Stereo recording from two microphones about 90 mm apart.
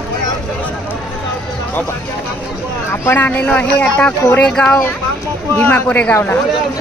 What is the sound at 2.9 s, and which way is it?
Speech, 30° left (ahead or behind).